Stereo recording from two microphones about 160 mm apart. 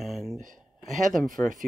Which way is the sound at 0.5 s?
Centre (ahead or behind).